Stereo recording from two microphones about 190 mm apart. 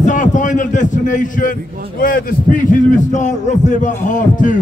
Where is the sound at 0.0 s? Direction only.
40° left (ahead or behind).